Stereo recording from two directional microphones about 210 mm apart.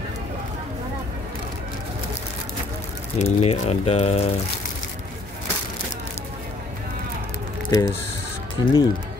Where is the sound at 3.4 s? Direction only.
30° left (ahead or behind).